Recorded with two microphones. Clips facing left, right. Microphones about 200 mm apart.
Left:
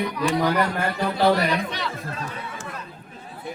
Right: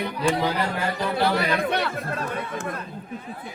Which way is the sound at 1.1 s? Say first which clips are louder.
Left 3 dB; 55° right (ahead or behind).